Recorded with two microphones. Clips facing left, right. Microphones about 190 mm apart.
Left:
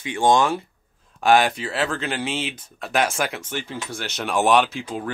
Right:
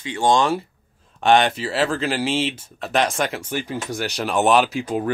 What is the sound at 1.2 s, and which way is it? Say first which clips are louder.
Speech: right 1 dB; 5° left (ahead or behind).